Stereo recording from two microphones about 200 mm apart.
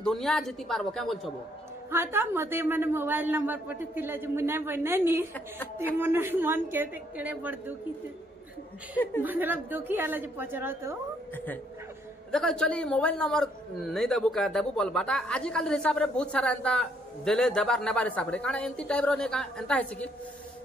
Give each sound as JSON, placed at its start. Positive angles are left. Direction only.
{"t": 0.0, "sound": "a woman's voice", "side_deg": 0}
{"t": 1.9, "sound": "a man's voice", "side_deg": -10}
{"t": 9.2, "sound": "a man's voice", "side_deg": -10}
{"t": 11.3, "sound": "a woman's voice", "side_deg": 10}